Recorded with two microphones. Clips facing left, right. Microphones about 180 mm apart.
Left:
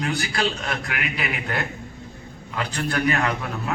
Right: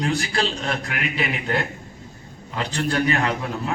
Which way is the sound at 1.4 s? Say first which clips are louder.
Right 3 dB; 30° right (ahead or behind).